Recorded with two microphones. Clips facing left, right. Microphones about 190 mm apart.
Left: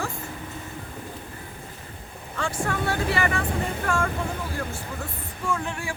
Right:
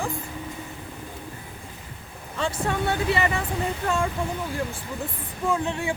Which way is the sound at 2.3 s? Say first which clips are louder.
Right 2 dB; 20° right (ahead or behind).